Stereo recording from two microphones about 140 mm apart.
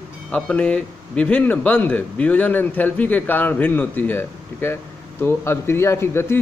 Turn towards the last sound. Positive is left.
turn(degrees=20)  # may be behind; listen again after turning